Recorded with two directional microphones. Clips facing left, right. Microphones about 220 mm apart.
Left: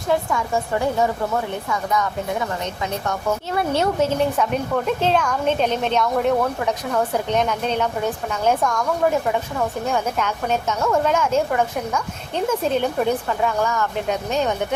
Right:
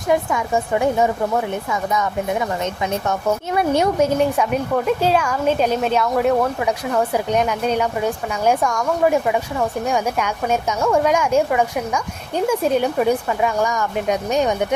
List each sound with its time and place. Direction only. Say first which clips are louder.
0.1 s speech: right 2 dB; 15° right (ahead or behind)